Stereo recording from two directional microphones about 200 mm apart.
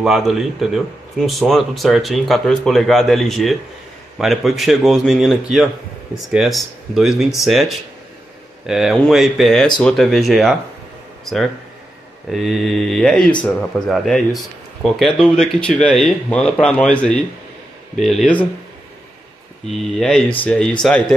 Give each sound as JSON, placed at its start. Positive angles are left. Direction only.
{"t": 0.0, "sound": "speech", "side_deg": 0}
{"t": 12.3, "sound": "speech", "side_deg": 0}
{"t": 19.6, "sound": "speech", "side_deg": 0}